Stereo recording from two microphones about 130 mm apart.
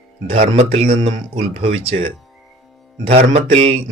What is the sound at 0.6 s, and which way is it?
Speech, 50° right (ahead or behind).